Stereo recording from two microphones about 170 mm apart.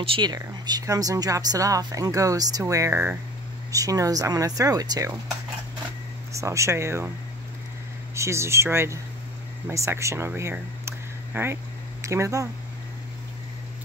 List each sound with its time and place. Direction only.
0.0 s speech: 30° right (ahead or behind)
6.3 s speech: 15° right (ahead or behind)
8.1 s speech: 15° right (ahead or behind)